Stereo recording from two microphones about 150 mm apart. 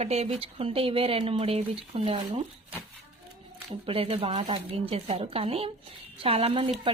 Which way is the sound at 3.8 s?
40° right (ahead or behind).